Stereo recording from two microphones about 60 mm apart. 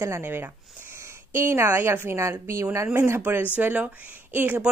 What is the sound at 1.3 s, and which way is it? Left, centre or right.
Speech, right.